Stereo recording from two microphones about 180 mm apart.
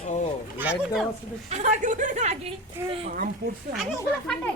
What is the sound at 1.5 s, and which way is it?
A woman's voice, 40° right (ahead or behind).